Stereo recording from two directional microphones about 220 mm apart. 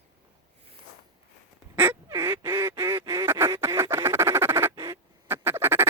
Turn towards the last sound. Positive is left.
turn(degrees=-10)  # may be behind; listen again after turning